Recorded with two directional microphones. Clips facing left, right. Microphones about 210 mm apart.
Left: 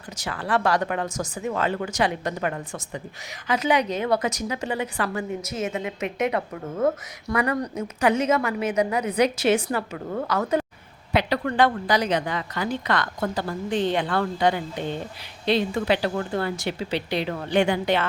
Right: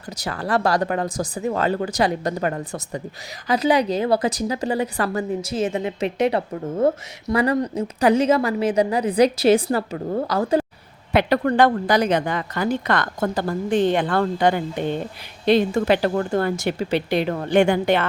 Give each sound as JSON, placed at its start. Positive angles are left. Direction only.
{"t": 0.2, "sound": "a woman's voice", "side_deg": -40}
{"t": 11.1, "sound": "a woman's voice", "side_deg": -50}